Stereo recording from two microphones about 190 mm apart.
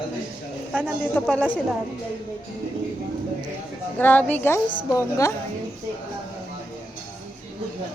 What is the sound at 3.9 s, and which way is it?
Speech, 10° left (ahead or behind).